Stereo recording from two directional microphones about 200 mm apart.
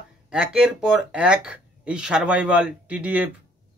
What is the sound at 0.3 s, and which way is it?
A man's voice, 5° right (ahead or behind).